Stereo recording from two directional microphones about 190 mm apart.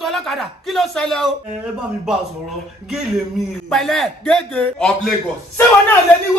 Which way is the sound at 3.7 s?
Centre (ahead or behind).